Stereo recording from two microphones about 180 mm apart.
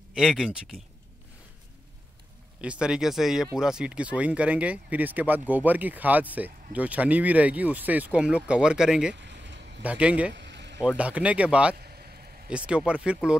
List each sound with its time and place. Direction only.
0.1 s speech: centre (ahead or behind)
2.6 s speech: 5° right (ahead or behind)
9.1 s a sound: 75° right (ahead or behind)
9.8 s speech: 5° right (ahead or behind)
10.3 s a sound: 75° right (ahead or behind)
11.0 s speech: 5° right (ahead or behind)
11.8 s vehicle: 60° right (ahead or behind)
12.4 s speech: 5° right (ahead or behind)